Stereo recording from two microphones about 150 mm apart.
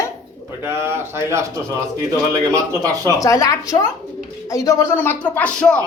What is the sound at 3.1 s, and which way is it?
Speech, 20° left (ahead or behind).